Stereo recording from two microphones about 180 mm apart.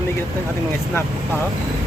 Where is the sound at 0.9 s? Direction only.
10° left (ahead or behind).